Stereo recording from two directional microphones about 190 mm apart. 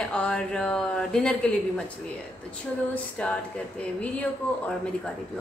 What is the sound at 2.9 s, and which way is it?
Speech, 5° left (ahead or behind).